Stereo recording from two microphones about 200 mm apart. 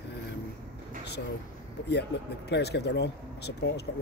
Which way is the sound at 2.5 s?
55° left (ahead or behind).